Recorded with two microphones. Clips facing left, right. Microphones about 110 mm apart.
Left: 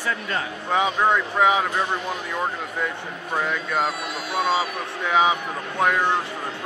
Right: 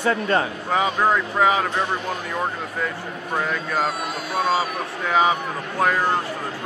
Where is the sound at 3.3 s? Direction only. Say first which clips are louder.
Even; centre (ahead or behind).